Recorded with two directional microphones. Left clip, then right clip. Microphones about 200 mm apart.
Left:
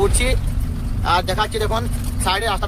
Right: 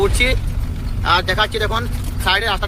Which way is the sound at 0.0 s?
10° left (ahead or behind).